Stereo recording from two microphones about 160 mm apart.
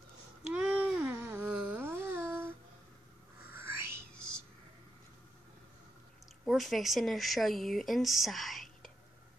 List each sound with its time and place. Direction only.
0.5 s a sound: 5° right (ahead or behind)
3.5 s music: 15° right (ahead or behind)
6.4 s speech: centre (ahead or behind)